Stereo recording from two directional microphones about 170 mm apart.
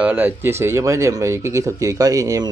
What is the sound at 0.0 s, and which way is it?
A man's voice, 10° right (ahead or behind).